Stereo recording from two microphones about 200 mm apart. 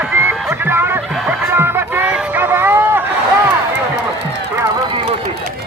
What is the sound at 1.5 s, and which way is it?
Music, 10° right (ahead or behind).